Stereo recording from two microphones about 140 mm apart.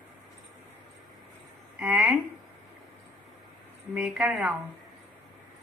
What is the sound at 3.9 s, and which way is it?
Speech, 5° right (ahead or behind).